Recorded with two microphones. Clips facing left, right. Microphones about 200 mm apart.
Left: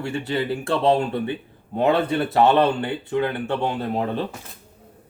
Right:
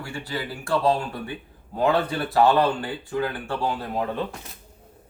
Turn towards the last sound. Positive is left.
turn(degrees=25)  # may be behind; listen again after turning